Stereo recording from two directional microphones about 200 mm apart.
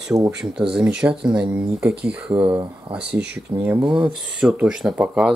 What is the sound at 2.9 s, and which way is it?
Speech, 25° right (ahead or behind).